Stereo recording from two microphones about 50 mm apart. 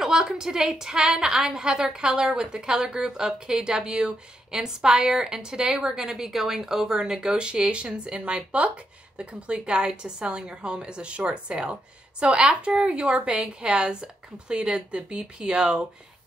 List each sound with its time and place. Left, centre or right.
0.0 s a woman's voice: centre